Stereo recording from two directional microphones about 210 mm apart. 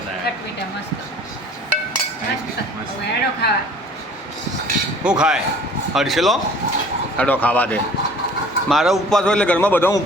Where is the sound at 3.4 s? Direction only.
50° left (ahead or behind).